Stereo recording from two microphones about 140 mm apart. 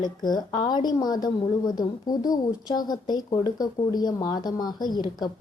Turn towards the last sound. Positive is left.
turn(degrees=30)  # may be behind; listen again after turning